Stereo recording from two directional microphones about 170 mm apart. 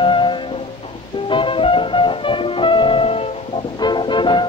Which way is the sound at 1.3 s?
30° left (ahead or behind).